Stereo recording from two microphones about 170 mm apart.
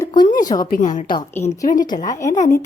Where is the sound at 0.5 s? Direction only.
55° left (ahead or behind).